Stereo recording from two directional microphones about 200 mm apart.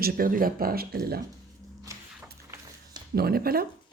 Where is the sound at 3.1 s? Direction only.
50° right (ahead or behind).